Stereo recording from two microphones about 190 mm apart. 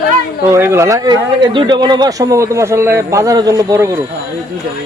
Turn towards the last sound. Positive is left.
turn(degrees=-15)  # may be behind; listen again after turning